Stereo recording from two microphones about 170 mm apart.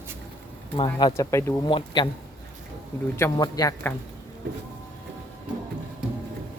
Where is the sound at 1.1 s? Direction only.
15° left (ahead or behind).